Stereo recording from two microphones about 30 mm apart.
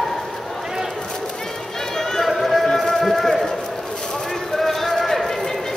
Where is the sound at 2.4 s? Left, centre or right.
Centre.